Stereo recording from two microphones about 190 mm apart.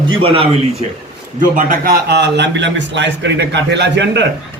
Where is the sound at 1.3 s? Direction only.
45° right (ahead or behind).